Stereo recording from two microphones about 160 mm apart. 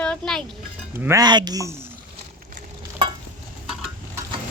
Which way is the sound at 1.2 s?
25° right (ahead or behind).